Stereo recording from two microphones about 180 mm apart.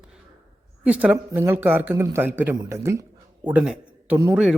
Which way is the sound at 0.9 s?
10° right (ahead or behind).